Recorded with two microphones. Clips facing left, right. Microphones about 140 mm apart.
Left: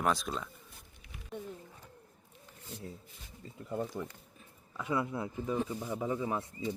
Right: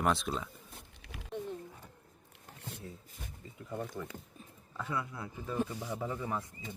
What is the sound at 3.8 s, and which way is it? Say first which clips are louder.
Speech: left 3 dB; 25° left (ahead or behind).